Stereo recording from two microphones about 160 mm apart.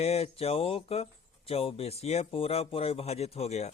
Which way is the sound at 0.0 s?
40° left (ahead or behind).